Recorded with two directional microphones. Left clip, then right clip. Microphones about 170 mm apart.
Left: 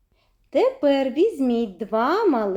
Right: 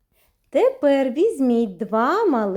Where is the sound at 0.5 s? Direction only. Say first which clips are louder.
Right 2 dB; 30° right (ahead or behind).